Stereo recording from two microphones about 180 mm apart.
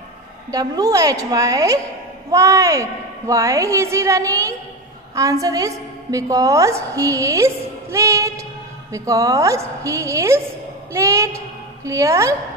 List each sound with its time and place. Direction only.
0.5 s a woman's voice: 20° right (ahead or behind)